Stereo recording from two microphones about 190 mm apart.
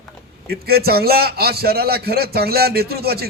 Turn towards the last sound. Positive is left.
turn(degrees=-55)  # may be behind; listen again after turning